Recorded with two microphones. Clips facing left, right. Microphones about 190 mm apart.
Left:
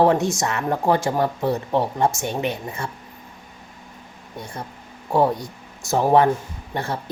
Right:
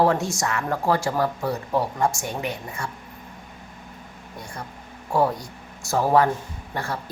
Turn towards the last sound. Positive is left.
turn(degrees=20)  # may be behind; listen again after turning